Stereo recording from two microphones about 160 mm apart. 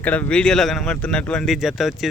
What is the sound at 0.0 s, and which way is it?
A man's voice, 10° left (ahead or behind).